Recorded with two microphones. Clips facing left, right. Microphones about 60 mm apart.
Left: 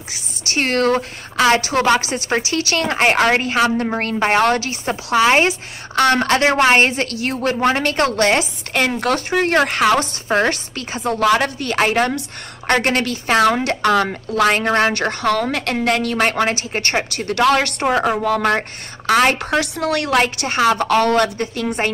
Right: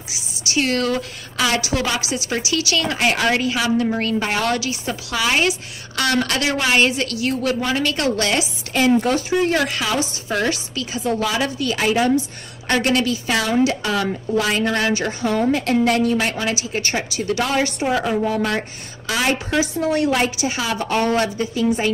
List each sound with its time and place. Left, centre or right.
0.1 s a woman's voice: left
8.8 s speech: left
18.2 s a woman's voice: left
18.5 s a woman's voice: left